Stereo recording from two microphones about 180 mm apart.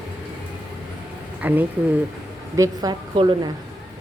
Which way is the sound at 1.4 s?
10° right (ahead or behind).